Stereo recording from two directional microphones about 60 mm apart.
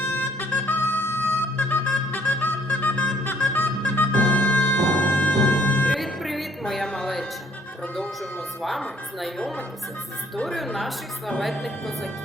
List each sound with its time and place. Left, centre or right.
0.1 s a sound: left
1.5 s music: left
5.9 s music: centre
8.6 s a woman's voice: centre